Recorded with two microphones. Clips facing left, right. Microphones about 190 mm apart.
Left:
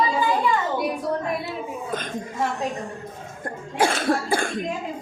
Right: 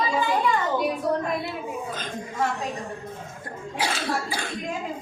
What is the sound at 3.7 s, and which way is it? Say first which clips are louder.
Cough: left 6 dB; 50° left (ahead or behind).